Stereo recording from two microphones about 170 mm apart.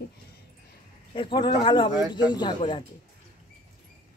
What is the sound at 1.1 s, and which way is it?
Speech, 30° left (ahead or behind).